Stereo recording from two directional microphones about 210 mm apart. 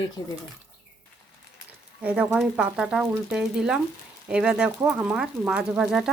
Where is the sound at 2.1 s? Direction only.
5° right (ahead or behind).